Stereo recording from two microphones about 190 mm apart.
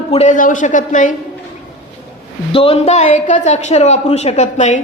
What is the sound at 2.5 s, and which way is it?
Speech, 30° left (ahead or behind).